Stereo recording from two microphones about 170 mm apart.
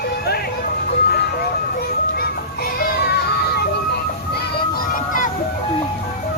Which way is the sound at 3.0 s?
70° left (ahead or behind).